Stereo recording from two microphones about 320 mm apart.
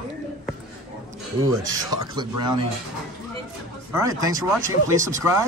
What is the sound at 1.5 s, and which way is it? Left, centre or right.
Speech, centre.